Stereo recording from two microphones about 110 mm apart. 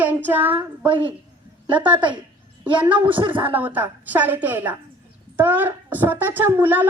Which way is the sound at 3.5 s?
15° right (ahead or behind).